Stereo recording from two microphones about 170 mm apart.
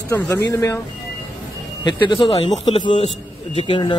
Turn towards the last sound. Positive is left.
turn(degrees=30)  # may be behind; listen again after turning